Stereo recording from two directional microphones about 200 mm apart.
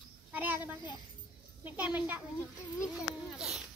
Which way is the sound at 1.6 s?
10° right (ahead or behind).